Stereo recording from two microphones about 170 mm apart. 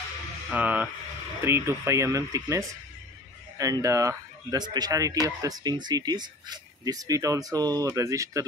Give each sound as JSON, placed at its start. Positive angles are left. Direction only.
{"t": 0.5, "sound": "speech", "side_deg": -10}